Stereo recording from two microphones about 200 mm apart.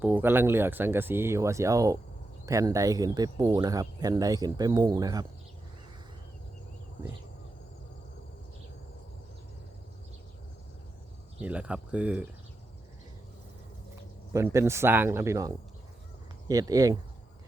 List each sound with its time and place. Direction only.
0.0 s speech: 10° right (ahead or behind)
11.3 s speech: 5° right (ahead or behind)
13.9 s speech: 15° right (ahead or behind)